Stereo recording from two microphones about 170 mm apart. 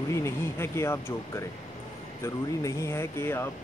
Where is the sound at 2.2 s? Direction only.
15° left (ahead or behind).